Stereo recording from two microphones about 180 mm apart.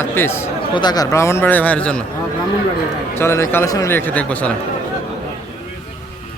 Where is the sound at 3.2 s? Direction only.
15° left (ahead or behind).